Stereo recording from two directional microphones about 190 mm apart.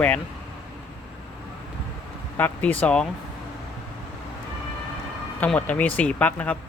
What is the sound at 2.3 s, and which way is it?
Speech, 10° left (ahead or behind).